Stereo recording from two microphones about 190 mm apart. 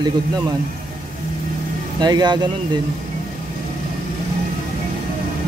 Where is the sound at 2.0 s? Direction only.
20° right (ahead or behind).